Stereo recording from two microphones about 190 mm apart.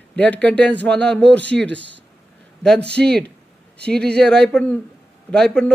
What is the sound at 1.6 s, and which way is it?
Speech, 70° right (ahead or behind).